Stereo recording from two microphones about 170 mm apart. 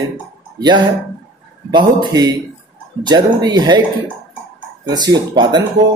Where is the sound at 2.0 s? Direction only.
25° right (ahead or behind).